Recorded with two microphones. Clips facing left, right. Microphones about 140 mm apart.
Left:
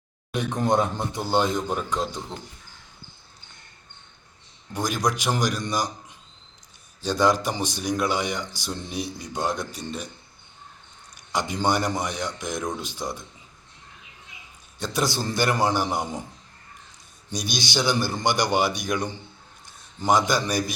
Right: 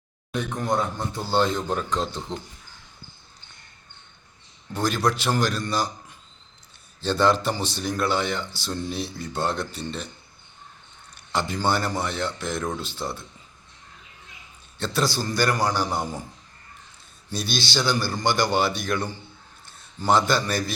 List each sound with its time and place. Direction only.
0.3 s a man's voice: 20° left (ahead or behind)
4.7 s a man's voice: 15° left (ahead or behind)
7.0 s a man's voice: 10° left (ahead or behind)
11.3 s a man's voice: 15° left (ahead or behind)
14.8 s a man's voice: 20° left (ahead or behind)
17.2 s a man's voice: 15° left (ahead or behind)